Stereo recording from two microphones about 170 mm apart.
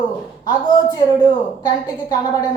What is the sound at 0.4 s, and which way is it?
A woman's voice, 25° left (ahead or behind).